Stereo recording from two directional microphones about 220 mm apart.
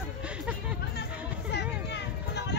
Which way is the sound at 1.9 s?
50° left (ahead or behind).